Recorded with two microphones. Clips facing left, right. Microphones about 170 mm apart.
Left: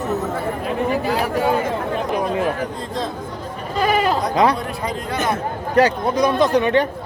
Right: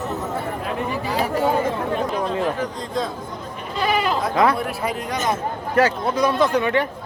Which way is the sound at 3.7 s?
40° left (ahead or behind).